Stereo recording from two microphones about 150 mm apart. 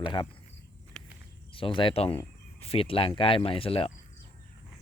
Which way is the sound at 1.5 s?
35° left (ahead or behind).